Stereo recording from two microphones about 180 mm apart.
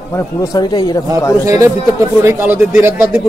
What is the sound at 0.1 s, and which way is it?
Speech, 15° left (ahead or behind).